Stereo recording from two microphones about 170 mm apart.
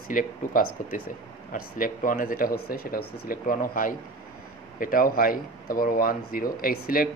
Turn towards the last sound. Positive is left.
turn(degrees=60)  # may be behind; listen again after turning